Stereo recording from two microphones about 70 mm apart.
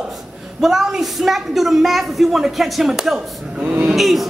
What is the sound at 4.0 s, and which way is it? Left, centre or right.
Speech, centre.